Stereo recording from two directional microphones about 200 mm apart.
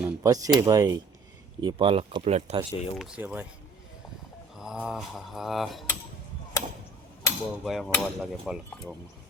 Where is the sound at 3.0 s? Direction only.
5° right (ahead or behind).